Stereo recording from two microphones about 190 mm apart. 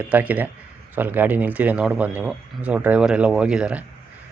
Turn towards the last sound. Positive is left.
turn(degrees=-5)  # may be behind; listen again after turning